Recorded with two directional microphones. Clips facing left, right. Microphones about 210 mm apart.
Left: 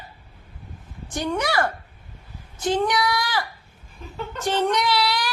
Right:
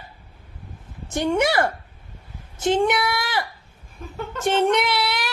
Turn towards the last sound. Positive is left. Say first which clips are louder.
# left 1 dB
turn(degrees=-25)  # may be behind; listen again after turning